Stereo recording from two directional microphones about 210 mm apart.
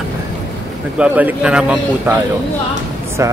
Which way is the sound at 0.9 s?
5° right (ahead or behind).